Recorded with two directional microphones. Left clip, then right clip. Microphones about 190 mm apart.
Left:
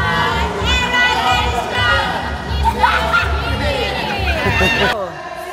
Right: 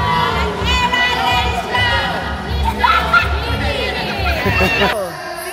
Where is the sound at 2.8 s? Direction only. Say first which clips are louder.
Right 3 dB; centre (ahead or behind).